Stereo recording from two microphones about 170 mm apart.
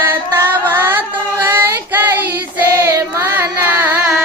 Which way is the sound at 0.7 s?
15° right (ahead or behind).